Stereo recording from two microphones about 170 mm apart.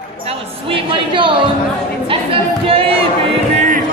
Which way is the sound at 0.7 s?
30° right (ahead or behind).